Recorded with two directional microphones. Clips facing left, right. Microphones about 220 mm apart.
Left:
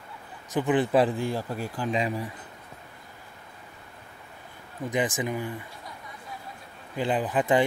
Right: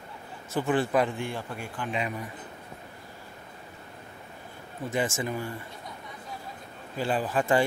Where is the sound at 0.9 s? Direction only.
35° left (ahead or behind).